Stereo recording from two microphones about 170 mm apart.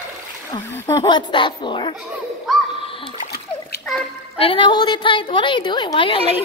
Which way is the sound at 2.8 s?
30° left (ahead or behind).